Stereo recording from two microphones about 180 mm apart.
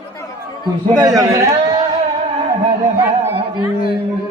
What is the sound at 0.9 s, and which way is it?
Speech, 20° right (ahead or behind).